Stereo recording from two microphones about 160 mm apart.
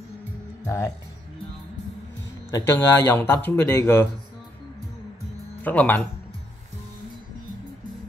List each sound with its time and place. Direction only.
0.7 s speech: 20° left (ahead or behind)
2.5 s speech: 15° left (ahead or behind)
5.6 s speech: 10° left (ahead or behind)